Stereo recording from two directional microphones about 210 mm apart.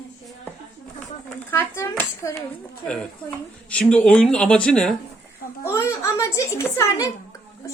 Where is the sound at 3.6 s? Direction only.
5° left (ahead or behind).